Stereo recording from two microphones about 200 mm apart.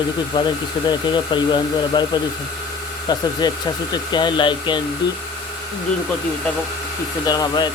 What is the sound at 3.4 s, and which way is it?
Speech, 20° left (ahead or behind).